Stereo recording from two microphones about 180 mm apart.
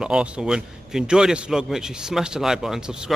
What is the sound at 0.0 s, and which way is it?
Speech, 5° right (ahead or behind).